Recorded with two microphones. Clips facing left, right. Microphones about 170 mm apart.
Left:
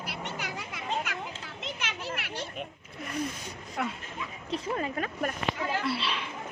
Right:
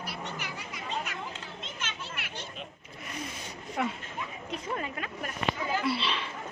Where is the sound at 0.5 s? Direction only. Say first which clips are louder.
Left 3 dB; 70° left (ahead or behind).